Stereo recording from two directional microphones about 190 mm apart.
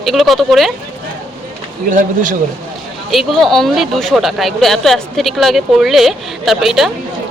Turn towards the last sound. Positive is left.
turn(degrees=0)  # may be behind; listen again after turning